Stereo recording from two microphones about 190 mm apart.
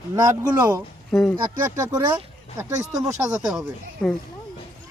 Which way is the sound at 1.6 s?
20° right (ahead or behind).